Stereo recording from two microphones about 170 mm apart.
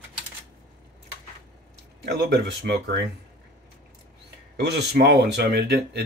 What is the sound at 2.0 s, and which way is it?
Speech, 75° right (ahead or behind).